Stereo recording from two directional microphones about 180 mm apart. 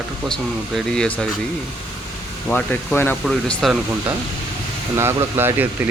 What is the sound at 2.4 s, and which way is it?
Speech, 10° left (ahead or behind).